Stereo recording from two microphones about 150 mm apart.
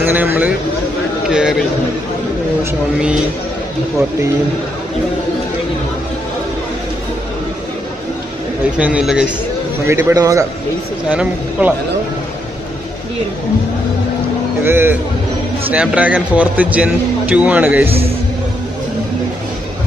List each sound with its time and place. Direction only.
0.0 s a man's voice: 10° right (ahead or behind)
8.7 s a man's voice: 5° right (ahead or behind)
9.8 s a man's voice: 15° right (ahead or behind)
11.1 s a man's voice: 10° right (ahead or behind)
14.6 s a man's voice: 15° right (ahead or behind)
17.8 s a man's voice: 40° right (ahead or behind)